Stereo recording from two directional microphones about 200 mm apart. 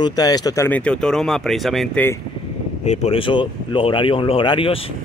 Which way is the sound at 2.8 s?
35° left (ahead or behind).